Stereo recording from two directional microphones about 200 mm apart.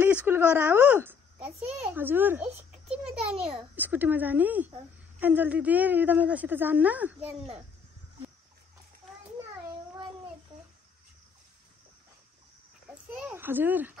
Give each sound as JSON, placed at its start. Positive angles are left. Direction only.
{"t": 0.0, "sound": "a sound", "side_deg": -10}
{"t": 2.0, "sound": "a woman's voice", "side_deg": -10}
{"t": 3.0, "sound": "a child's voice", "side_deg": -30}
{"t": 3.5, "sound": "a woman's voice", "side_deg": -10}
{"t": 7.2, "sound": "speech", "side_deg": -30}
{"t": 12.9, "sound": "speech", "side_deg": -5}